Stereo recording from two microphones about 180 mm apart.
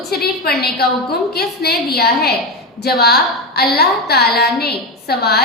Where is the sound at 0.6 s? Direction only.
60° left (ahead or behind).